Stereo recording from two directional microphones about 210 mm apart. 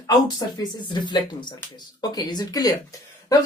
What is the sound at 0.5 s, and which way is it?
A woman's voice, 20° left (ahead or behind).